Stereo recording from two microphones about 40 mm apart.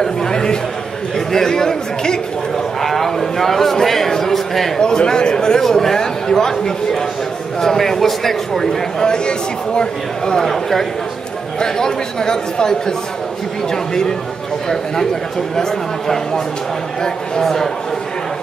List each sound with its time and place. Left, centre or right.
0.0 s a sound: centre
1.1 s a man's voice: centre
4.7 s speech: centre
9.0 s a man's voice: centre
17.4 s speech: centre